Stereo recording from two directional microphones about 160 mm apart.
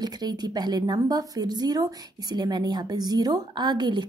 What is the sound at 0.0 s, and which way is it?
A woman's voice, 25° right (ahead or behind).